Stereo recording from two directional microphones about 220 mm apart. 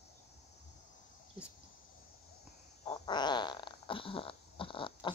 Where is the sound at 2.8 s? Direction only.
20° left (ahead or behind).